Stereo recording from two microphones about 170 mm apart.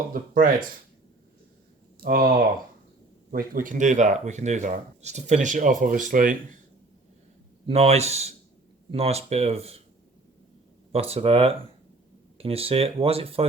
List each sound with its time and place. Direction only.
0.1 s speech: 55° right (ahead or behind)
2.0 s speech: 60° right (ahead or behind)
7.7 s speech: 35° right (ahead or behind)
10.9 s speech: 35° right (ahead or behind)